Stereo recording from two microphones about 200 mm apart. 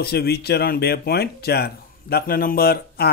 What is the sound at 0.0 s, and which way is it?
A man's voice, 50° left (ahead or behind).